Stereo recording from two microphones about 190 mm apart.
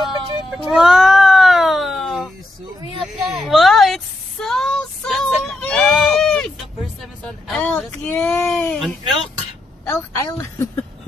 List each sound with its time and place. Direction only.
0.7 s cat: centre (ahead or behind)
3.0 s a sound: centre (ahead or behind)
9.8 s a woman's voice: 15° left (ahead or behind)